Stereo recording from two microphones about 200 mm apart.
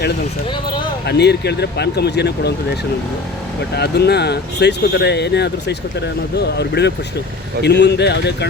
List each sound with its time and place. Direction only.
1.0 s speech: 55° left (ahead or behind)
3.8 s speech: 55° left (ahead or behind)